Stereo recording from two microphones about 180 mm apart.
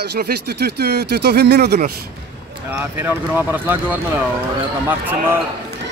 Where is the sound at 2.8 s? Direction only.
10° right (ahead or behind).